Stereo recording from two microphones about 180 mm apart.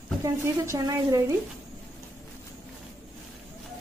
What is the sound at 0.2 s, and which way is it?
A woman's voice, 15° right (ahead or behind).